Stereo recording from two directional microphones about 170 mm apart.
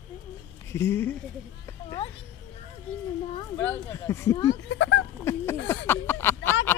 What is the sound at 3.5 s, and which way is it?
Speech, 15° left (ahead or behind).